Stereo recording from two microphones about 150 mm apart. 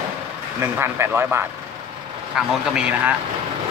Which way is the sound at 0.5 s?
15° right (ahead or behind).